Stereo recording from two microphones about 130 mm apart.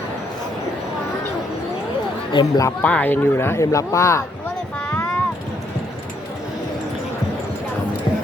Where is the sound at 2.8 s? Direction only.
10° left (ahead or behind).